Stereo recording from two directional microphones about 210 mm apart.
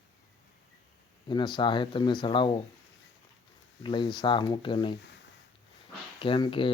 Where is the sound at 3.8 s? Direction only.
20° left (ahead or behind).